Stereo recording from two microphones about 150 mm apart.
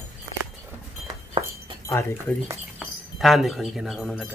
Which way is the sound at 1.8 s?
15° left (ahead or behind).